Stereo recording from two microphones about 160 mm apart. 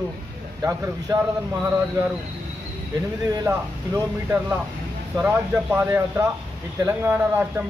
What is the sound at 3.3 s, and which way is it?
A man's voice, 20° right (ahead or behind).